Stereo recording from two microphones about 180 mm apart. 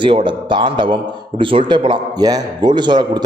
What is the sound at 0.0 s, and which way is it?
A man's voice, 25° right (ahead or behind).